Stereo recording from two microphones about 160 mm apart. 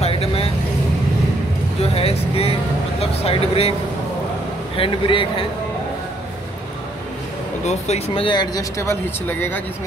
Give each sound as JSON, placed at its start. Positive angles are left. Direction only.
{"t": 0.0, "sound": "vehicle", "side_deg": 40}
{"t": 1.8, "sound": "speech", "side_deg": 40}
{"t": 4.7, "sound": "speech", "side_deg": 35}
{"t": 7.6, "sound": "speech", "side_deg": 45}